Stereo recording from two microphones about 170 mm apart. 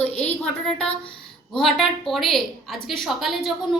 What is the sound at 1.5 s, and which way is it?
A woman's voice, centre (ahead or behind).